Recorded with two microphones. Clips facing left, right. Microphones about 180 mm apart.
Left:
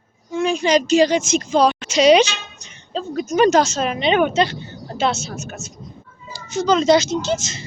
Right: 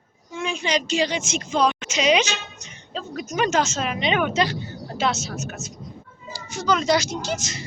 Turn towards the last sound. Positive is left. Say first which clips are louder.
# left 6 dB
turn(degrees=25)  # may be behind; listen again after turning